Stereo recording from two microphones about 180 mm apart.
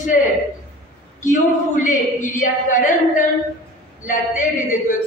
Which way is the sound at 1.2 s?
45° left (ahead or behind).